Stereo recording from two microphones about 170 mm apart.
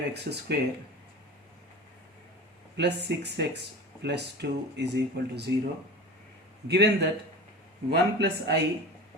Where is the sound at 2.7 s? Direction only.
80° right.